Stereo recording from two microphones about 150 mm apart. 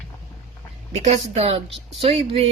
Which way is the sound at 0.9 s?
45° right (ahead or behind).